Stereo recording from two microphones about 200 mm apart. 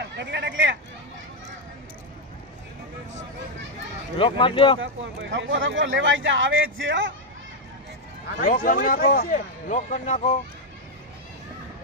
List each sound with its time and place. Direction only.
0.2 s speech: 60° right (ahead or behind)
4.2 s speech: 25° left (ahead or behind)
4.7 s speech: 65° right (ahead or behind)
8.4 s a man's voice: 45° left (ahead or behind)